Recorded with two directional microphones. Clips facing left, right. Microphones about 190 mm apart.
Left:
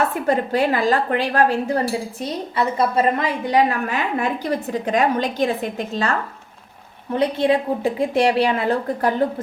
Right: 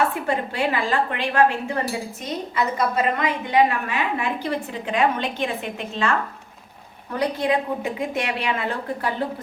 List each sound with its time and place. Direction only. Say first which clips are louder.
0.3 s a woman's voice: left 5 dB; 40° left (ahead or behind)
7.1 s a woman's voice: left 4 dB; 25° left (ahead or behind)